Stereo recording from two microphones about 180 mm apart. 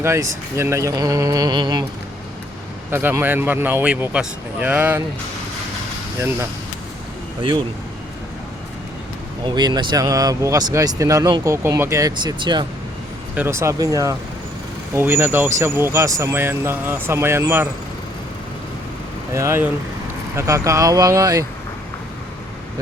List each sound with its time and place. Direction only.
0.0 s speech: 15° right (ahead or behind)
2.9 s speech: 10° right (ahead or behind)
6.1 s speech: 15° right (ahead or behind)
9.5 s speech: 25° right (ahead or behind)
13.3 s speech: 10° right (ahead or behind)
19.3 s speech: 15° right (ahead or behind)